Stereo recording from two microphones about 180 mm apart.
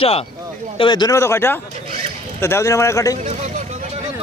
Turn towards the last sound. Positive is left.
turn(degrees=-40)  # may be behind; listen again after turning